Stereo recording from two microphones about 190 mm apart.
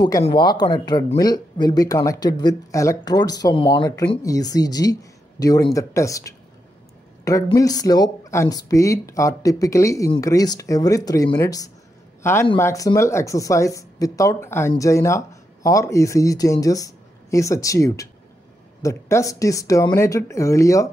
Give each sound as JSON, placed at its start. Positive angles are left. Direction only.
{"t": 0.2, "sound": "speech", "side_deg": 25}
{"t": 7.5, "sound": "a man's voice", "side_deg": 20}